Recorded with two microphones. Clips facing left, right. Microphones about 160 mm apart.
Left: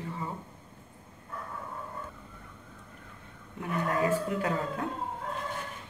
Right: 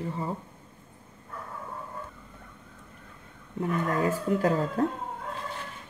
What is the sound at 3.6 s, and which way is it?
Speech, 35° right (ahead or behind).